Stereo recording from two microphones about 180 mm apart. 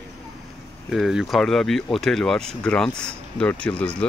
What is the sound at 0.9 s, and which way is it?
Speech, centre (ahead or behind).